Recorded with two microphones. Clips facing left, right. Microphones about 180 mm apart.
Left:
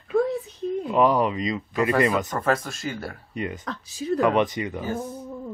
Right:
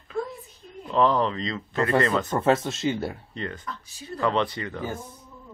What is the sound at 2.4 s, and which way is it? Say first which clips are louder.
Speech: right 3 dB; 25° right (ahead or behind).